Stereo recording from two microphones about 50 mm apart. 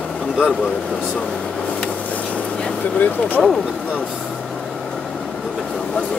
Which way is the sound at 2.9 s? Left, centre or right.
Left.